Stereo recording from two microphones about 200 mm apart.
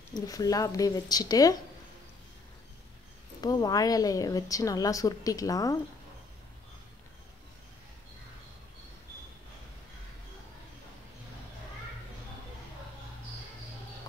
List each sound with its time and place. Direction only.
0.1 s a woman's voice: 20° left (ahead or behind)
3.3 s a woman's voice: 20° left (ahead or behind)